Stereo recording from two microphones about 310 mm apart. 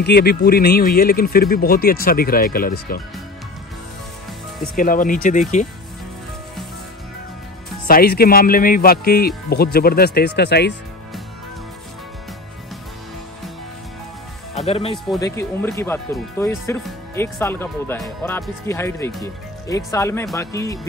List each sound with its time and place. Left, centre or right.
0.0 s speech: left
4.7 s speech: left
7.8 s speech: left
14.6 s speech: centre